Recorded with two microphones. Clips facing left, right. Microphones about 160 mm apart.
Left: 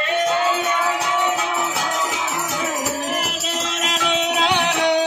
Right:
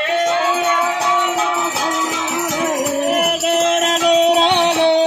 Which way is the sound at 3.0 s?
60° right (ahead or behind).